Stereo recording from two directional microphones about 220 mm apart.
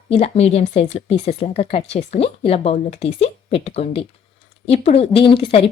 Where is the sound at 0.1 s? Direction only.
30° left (ahead or behind).